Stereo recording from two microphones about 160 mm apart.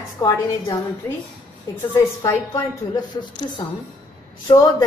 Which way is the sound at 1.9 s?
15° left (ahead or behind).